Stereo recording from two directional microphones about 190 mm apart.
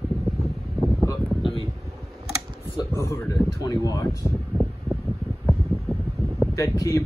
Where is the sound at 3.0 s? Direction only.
20° left (ahead or behind).